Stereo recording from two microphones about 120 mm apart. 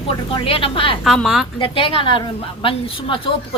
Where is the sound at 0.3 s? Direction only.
50° left (ahead or behind).